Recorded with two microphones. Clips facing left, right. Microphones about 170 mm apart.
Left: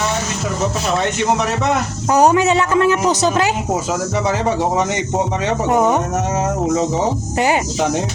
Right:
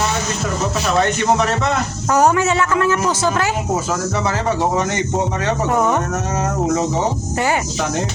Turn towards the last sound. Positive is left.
turn(degrees=20)  # may be behind; listen again after turning